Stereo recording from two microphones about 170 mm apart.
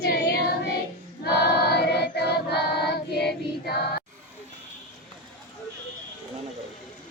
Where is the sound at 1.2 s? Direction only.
70° left (ahead or behind).